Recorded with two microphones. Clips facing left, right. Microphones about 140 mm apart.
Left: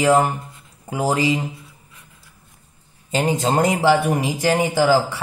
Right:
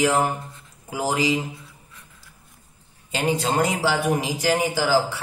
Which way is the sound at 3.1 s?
40° left (ahead or behind).